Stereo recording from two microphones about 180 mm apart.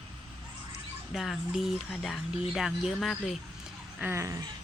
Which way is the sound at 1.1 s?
Centre (ahead or behind).